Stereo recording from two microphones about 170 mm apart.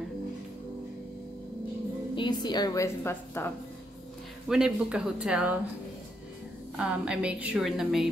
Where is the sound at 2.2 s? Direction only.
25° left (ahead or behind).